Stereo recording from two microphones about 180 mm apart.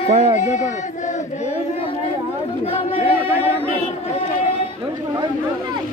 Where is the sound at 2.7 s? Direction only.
35° left (ahead or behind).